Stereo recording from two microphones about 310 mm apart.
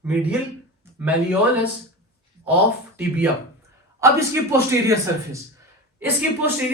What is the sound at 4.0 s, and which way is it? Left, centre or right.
Speech, centre.